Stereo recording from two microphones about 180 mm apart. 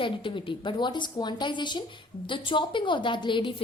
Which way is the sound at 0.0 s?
30° left (ahead or behind).